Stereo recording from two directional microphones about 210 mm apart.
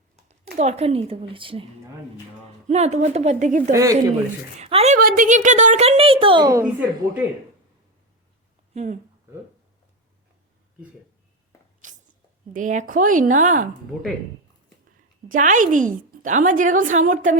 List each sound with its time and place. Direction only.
0.3 s speech: 30° right (ahead or behind)
2.6 s a woman's voice: 30° right (ahead or behind)
3.7 s a woman's voice: 15° right (ahead or behind)
4.6 s a woman's voice: 30° right (ahead or behind)
4.9 s a woman's voice: 40° right (ahead or behind); by 6.8 s 15° right (ahead or behind)
8.7 s speech: 35° right (ahead or behind)
11.8 s sneeze: 40° right (ahead or behind)
12.5 s a woman's voice: 40° right (ahead or behind)
15.3 s a woman's voice: 35° right (ahead or behind)